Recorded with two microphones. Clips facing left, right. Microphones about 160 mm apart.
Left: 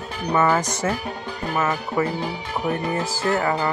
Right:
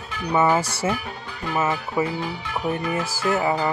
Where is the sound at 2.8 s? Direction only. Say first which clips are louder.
Left 1 dB; 30° left (ahead or behind).